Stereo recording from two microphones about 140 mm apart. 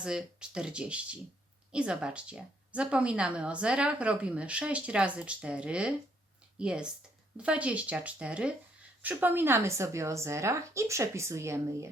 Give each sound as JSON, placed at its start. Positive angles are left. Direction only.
{"t": 0.0, "sound": "a woman's voice", "side_deg": -5}